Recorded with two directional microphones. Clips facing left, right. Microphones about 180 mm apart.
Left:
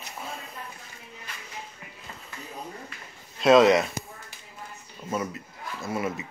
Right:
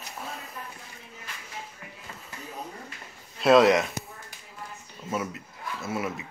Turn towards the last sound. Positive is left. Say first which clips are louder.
# left 1 dB
turn(degrees=0)  # may be behind; listen again after turning